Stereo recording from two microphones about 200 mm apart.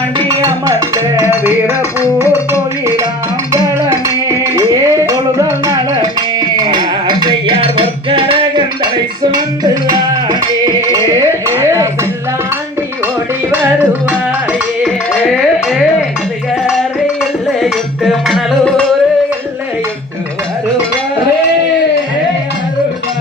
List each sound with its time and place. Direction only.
0.4 s music: 15° right (ahead or behind)
11.4 s a sound: 15° right (ahead or behind)
14.8 s music: centre (ahead or behind)
17.6 s music: centre (ahead or behind)